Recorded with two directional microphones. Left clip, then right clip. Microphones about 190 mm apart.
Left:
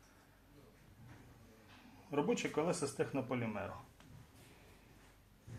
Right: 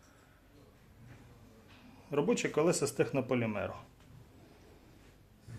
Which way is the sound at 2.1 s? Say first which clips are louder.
Right 5 dB; 45° right (ahead or behind).